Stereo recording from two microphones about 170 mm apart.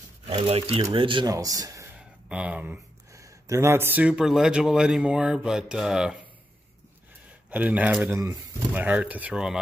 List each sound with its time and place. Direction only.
0.3 s speech: 35° right (ahead or behind)
2.2 s speech: 5° right (ahead or behind)
7.5 s speech: 10° right (ahead or behind)